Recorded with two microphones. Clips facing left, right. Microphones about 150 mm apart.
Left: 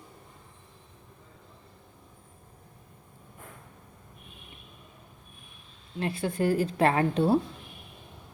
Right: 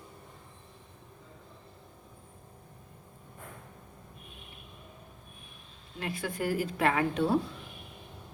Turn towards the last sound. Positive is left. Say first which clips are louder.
# left 3 dB
turn(degrees=30)  # may be behind; listen again after turning